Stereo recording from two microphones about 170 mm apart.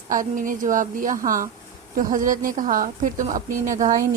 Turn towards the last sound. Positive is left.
turn(degrees=-50)  # may be behind; listen again after turning